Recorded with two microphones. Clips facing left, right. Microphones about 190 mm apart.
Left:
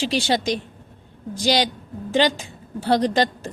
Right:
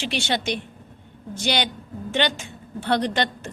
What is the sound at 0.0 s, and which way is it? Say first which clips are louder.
A woman's voice: left 4 dB; 35° left (ahead or behind).